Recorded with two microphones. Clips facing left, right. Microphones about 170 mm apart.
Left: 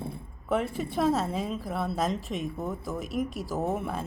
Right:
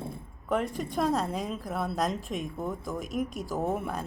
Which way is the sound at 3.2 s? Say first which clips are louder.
Left 1 dB; 45° right (ahead or behind).